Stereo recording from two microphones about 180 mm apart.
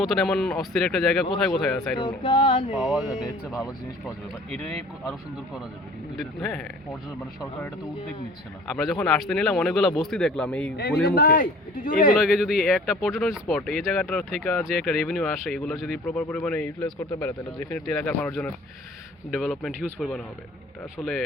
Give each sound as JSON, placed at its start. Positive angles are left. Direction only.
{"t": 0.0, "sound": "speech", "side_deg": 0}
{"t": 2.0, "sound": "a sound", "side_deg": 25}
{"t": 2.7, "sound": "speech", "side_deg": 0}
{"t": 4.5, "sound": "speech", "side_deg": 5}
{"t": 6.1, "sound": "speech", "side_deg": 5}
{"t": 8.7, "sound": "speech", "side_deg": 0}
{"t": 11.1, "sound": "a man's voice", "side_deg": 55}
{"t": 12.2, "sound": "speech", "side_deg": 0}